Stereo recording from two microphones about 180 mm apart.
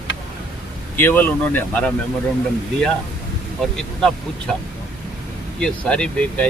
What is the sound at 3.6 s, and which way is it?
Speech, 5° left (ahead or behind).